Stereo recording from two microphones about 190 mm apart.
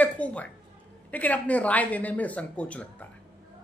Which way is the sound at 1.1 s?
10° left (ahead or behind).